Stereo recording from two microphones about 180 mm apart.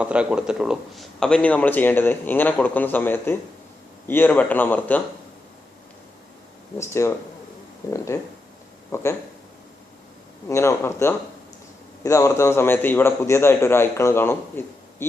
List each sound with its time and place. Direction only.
0.0 s speech: 5° right (ahead or behind); by 5.0 s 10° left (ahead or behind)
6.7 s speech: 15° left (ahead or behind)
10.5 s speech: 15° left (ahead or behind)